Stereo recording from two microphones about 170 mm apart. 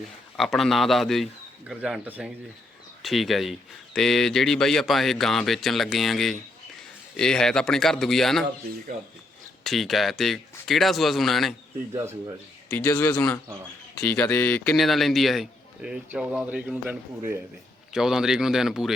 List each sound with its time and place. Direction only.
0.3 s speech: centre (ahead or behind)
9.6 s speech: centre (ahead or behind)
11.9 s speech: 20° right (ahead or behind)
12.7 s a man's voice: 20° left (ahead or behind)
13.1 s speech: 5° left (ahead or behind)